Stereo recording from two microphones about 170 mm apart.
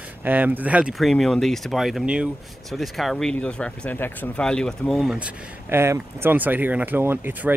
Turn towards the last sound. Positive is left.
turn(degrees=-10)  # may be behind; listen again after turning